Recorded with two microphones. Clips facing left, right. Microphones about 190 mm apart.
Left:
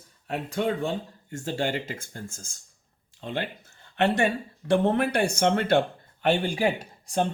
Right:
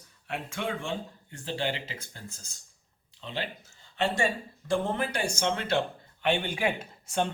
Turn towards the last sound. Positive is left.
turn(degrees=35)  # may be behind; listen again after turning